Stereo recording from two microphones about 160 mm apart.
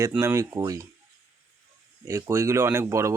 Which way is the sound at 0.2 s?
20° right (ahead or behind).